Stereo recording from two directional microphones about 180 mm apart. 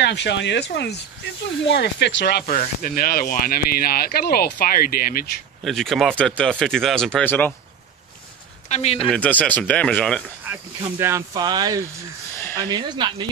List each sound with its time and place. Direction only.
0.0 s speech: 75° left (ahead or behind)
2.4 s speech: 35° left (ahead or behind)
2.8 s speech: 55° left (ahead or behind)
5.6 s speech: centre (ahead or behind)
8.6 s speech: 35° left (ahead or behind)
9.0 s speech: 5° left (ahead or behind)
10.5 s snake: 10° right (ahead or behind)
11.0 s speech: 15° right (ahead or behind)